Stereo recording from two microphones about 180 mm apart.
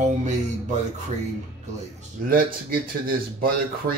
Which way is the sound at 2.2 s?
55° right (ahead or behind).